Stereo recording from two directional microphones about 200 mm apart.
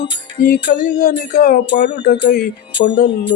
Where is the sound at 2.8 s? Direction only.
60° left (ahead or behind).